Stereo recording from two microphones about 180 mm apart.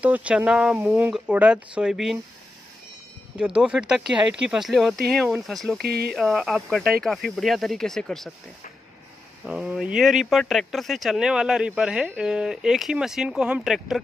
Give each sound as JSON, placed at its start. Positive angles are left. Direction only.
{"t": 0.0, "sound": "speech", "side_deg": -5}
{"t": 3.3, "sound": "speech", "side_deg": -5}
{"t": 5.8, "sound": "speech", "side_deg": -60}
{"t": 6.1, "sound": "speech", "side_deg": 0}
{"t": 9.4, "sound": "speech", "side_deg": -5}